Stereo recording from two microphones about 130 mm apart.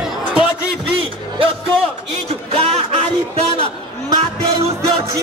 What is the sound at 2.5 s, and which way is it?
Music, 50° right (ahead or behind).